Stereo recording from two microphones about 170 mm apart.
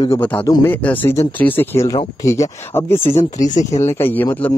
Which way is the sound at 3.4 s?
45° left (ahead or behind).